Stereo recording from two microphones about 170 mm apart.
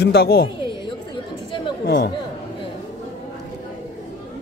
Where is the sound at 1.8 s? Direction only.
65° left (ahead or behind).